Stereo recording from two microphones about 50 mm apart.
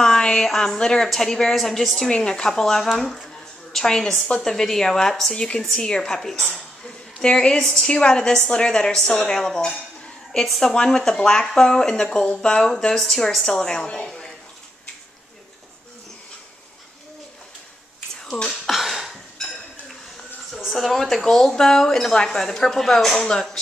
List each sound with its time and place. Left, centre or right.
0.0 s a sound: centre
0.6 s a woman's voice: centre
3.7 s a woman's voice: centre
7.2 s a woman's voice: centre
10.7 s a woman's voice: centre
18.2 s speech: centre
18.7 s cough: centre
20.5 s a woman's voice: centre